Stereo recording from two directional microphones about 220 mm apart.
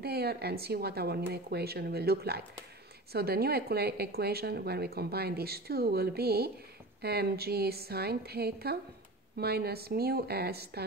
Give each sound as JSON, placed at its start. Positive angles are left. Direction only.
{"t": 0.0, "sound": "speech", "side_deg": -45}